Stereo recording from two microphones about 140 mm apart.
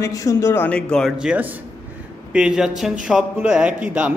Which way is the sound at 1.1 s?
10° right (ahead or behind).